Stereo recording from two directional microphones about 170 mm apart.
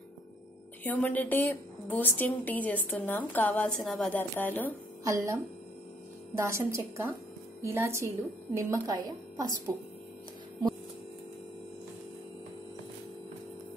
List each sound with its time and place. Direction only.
0.8 s a woman's voice: 10° left (ahead or behind)
5.0 s a woman's voice: 20° right (ahead or behind)